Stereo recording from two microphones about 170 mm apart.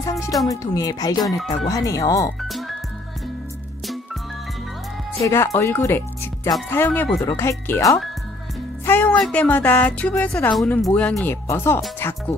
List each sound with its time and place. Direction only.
0.0 s music: 20° left (ahead or behind)
0.5 s speech: 20° left (ahead or behind)
5.2 s speech: 15° left (ahead or behind)